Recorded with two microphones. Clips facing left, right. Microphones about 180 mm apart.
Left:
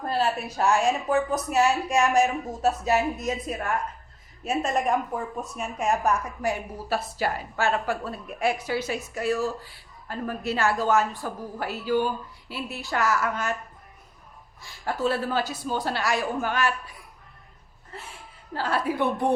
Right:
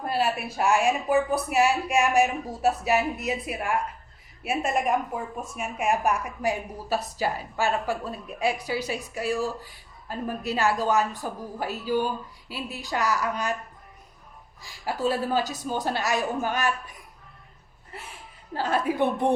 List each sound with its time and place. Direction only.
0.0 s a woman's voice: 10° right (ahead or behind)
14.6 s a woman's voice: 15° right (ahead or behind)
17.9 s a woman's voice: 15° right (ahead or behind)